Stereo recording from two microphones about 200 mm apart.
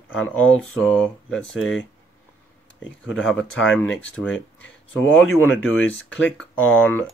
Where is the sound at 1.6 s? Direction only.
75° left (ahead or behind).